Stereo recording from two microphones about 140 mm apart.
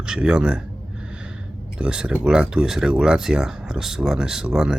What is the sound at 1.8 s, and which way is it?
Speech, 5° right (ahead or behind).